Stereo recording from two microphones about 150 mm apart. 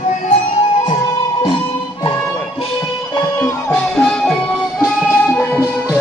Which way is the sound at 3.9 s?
5° left (ahead or behind).